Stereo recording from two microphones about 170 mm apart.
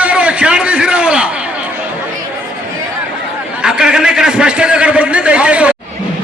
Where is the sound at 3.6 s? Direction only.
5° right (ahead or behind).